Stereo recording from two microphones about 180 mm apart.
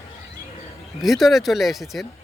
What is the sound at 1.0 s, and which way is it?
Speech, centre (ahead or behind).